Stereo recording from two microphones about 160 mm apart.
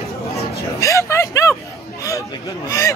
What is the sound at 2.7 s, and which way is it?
Speech, 20° left (ahead or behind).